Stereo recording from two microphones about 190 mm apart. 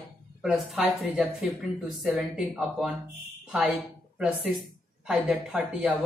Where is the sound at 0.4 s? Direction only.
Centre (ahead or behind).